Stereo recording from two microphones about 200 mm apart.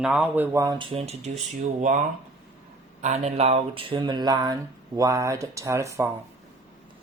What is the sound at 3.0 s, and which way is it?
Speech, 35° right (ahead or behind).